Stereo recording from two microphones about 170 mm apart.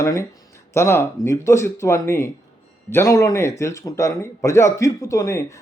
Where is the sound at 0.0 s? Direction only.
15° left (ahead or behind).